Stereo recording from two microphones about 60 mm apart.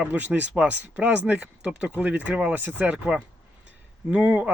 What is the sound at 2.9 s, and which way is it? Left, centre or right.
Speech, centre.